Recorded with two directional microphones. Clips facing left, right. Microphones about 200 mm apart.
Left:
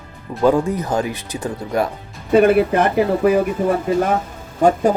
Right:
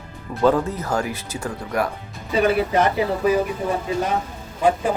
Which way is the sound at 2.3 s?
55° left (ahead or behind).